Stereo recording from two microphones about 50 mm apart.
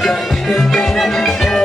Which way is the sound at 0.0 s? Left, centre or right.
Centre.